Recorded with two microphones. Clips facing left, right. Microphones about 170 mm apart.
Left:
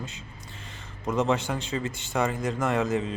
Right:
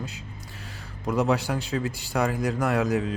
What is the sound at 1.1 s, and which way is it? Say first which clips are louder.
Speech: right 1 dB; 5° right (ahead or behind).